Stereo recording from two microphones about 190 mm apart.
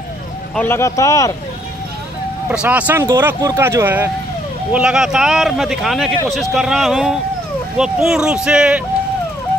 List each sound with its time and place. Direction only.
0.6 s speech: 10° left (ahead or behind)
2.5 s speech: 5° right (ahead or behind)